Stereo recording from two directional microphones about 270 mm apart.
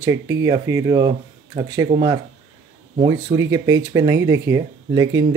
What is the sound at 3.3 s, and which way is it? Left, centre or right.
Speech, centre.